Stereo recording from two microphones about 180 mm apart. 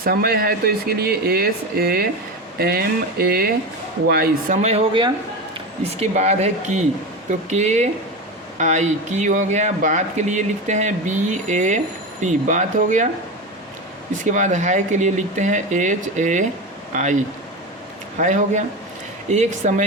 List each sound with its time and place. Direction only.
0.0 s speech: 55° right (ahead or behind)
14.3 s speech: 45° right (ahead or behind)
18.2 s speech: 45° right (ahead or behind)